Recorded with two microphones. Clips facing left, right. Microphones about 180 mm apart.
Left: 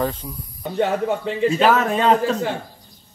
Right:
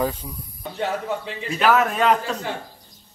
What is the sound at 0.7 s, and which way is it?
Speech, 50° left (ahead or behind).